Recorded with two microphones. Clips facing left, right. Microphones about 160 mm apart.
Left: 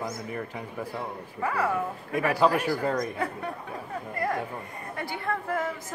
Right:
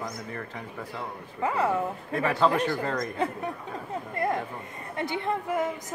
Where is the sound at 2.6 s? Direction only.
5° left (ahead or behind).